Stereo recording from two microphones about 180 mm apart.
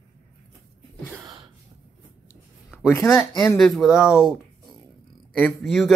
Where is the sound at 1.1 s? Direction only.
25° right (ahead or behind).